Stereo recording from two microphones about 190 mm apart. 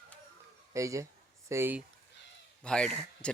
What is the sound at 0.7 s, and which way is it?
Speech, 15° right (ahead or behind).